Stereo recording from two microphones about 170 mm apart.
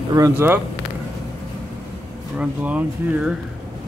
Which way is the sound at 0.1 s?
15° right (ahead or behind).